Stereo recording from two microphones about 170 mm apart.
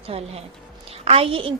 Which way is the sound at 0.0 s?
35° right (ahead or behind).